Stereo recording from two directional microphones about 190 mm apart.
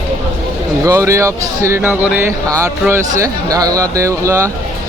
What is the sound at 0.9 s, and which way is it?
Speech, 15° right (ahead or behind).